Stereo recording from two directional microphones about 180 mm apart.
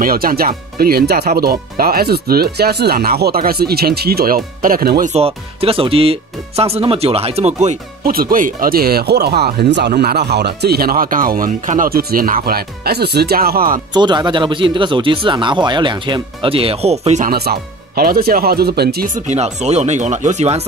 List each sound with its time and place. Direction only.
0.0 s speech: 55° right (ahead or behind)
5.1 s speech: 30° right (ahead or behind)
8.0 s speech: 55° right (ahead or behind)
13.9 s speech: 25° right (ahead or behind)
17.3 s speech: 55° right (ahead or behind)
19.2 s speech: 40° right (ahead or behind)